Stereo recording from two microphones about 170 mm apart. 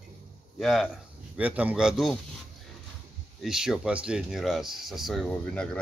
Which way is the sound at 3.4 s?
5° right (ahead or behind).